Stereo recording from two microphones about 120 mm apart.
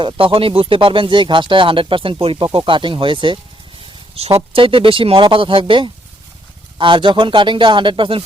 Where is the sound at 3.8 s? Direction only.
55° right (ahead or behind).